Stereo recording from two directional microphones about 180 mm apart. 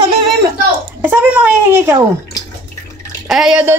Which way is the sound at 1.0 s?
10° right (ahead or behind).